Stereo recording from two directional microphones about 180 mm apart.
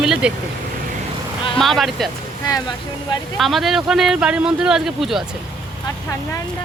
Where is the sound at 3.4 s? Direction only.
Centre (ahead or behind).